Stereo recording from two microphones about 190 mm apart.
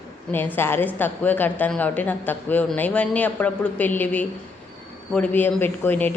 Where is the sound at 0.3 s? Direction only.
10° left (ahead or behind).